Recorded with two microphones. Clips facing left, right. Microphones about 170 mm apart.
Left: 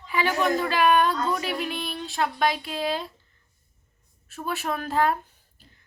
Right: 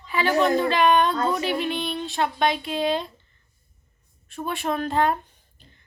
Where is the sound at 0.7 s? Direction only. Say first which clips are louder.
Right 1 dB; 5° left (ahead or behind).